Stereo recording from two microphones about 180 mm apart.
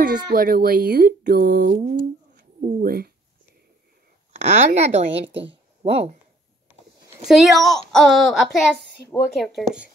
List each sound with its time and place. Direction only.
0.0 s speech: 55° right (ahead or behind)
4.4 s a woman's voice: 35° right (ahead or behind)
7.2 s a woman's voice: centre (ahead or behind)